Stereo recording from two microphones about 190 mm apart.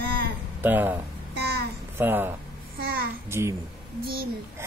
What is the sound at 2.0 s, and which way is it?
Speech, 10° right (ahead or behind).